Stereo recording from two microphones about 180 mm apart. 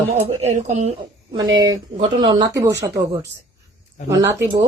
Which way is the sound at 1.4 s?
90° right.